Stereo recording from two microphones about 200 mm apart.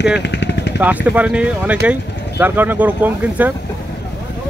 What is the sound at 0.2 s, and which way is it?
Vehicle, 60° left (ahead or behind).